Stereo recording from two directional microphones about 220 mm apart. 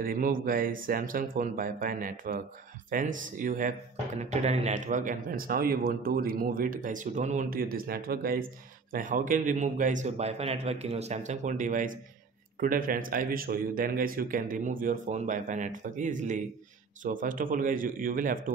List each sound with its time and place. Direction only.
0.0 s speech: 40° right (ahead or behind)